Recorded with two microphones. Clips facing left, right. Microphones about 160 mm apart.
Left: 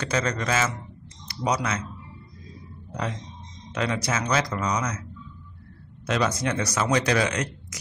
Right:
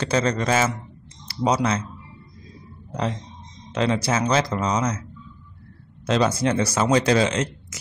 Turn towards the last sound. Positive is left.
turn(degrees=-25)  # may be behind; listen again after turning